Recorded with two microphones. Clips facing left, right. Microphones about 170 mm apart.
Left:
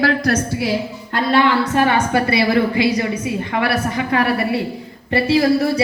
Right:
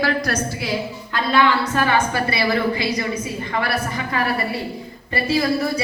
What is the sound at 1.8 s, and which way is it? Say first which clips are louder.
A woman's voice: left 3 dB; 65° left (ahead or behind).